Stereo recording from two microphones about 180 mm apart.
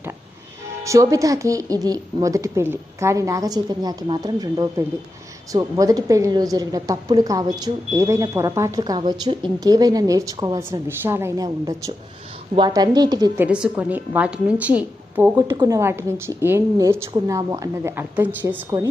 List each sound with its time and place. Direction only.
0.9 s a woman's voice: 20° right (ahead or behind)
13.3 s a woman's voice: 10° right (ahead or behind)
15.4 s a woman's voice: 20° right (ahead or behind)